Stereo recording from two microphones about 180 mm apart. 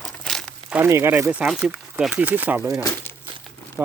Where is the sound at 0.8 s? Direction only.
15° right (ahead or behind).